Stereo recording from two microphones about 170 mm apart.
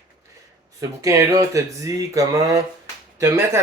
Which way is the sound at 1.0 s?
20° right (ahead or behind).